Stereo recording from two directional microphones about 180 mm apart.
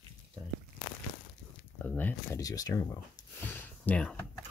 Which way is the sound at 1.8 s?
10° left (ahead or behind).